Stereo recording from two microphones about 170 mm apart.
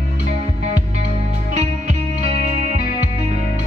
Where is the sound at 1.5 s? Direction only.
45° right (ahead or behind).